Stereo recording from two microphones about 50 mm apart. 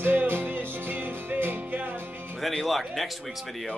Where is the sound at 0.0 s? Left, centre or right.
Right.